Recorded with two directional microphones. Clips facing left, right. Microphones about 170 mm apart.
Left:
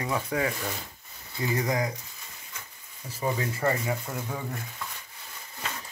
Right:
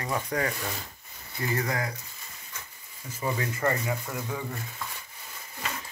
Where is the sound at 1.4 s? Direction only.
15° left (ahead or behind).